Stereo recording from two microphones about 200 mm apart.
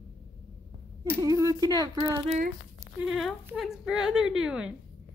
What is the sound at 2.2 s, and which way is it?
Speech, 35° right (ahead or behind).